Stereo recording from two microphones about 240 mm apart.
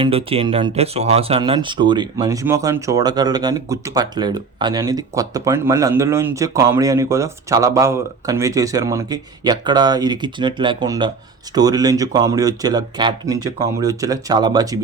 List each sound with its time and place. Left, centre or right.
0.0 s speech: right